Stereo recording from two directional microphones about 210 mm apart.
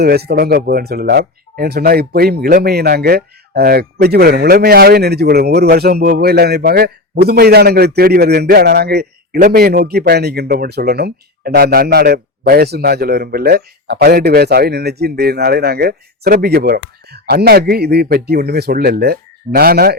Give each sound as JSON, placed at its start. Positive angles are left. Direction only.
{"t": 0.0, "sound": "speech", "side_deg": -50}